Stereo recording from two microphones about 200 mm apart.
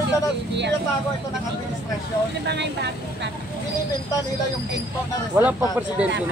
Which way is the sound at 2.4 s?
60° right (ahead or behind).